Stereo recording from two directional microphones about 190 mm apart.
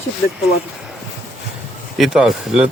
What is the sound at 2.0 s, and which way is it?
Speech, centre (ahead or behind).